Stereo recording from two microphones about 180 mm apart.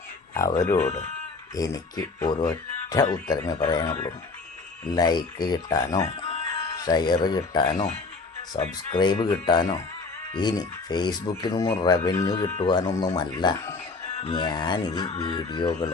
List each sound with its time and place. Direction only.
0.3 s speech: 15° left (ahead or behind)
0.8 s speech: 40° left (ahead or behind)
1.5 s speech: 20° left (ahead or behind)
6.2 s music: 30° left (ahead or behind)
8.5 s speech: 25° left (ahead or behind)